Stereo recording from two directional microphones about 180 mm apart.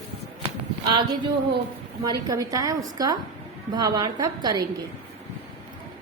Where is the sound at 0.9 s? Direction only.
25° right (ahead or behind).